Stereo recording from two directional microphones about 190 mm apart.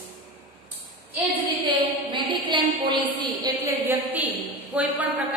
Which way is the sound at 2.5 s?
25° right (ahead or behind).